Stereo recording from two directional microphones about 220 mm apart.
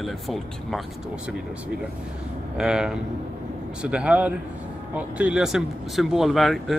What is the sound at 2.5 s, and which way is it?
Speech, 5° right (ahead or behind).